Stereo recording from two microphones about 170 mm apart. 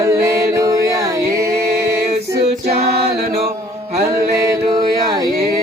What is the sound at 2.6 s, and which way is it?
A capella, 70° right (ahead or behind).